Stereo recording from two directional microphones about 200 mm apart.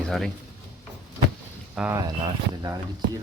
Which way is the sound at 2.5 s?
20° right (ahead or behind).